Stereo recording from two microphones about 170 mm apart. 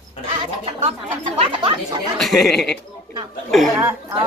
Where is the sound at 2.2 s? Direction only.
Centre (ahead or behind).